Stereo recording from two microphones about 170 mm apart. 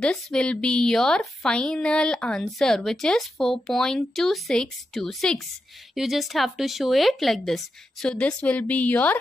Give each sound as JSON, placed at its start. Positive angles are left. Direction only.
{"t": 0.0, "sound": "a woman's voice", "side_deg": 5}